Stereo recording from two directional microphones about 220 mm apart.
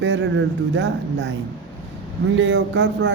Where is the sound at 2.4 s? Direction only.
55° right (ahead or behind).